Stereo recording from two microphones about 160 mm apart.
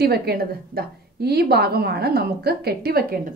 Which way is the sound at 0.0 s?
85° right.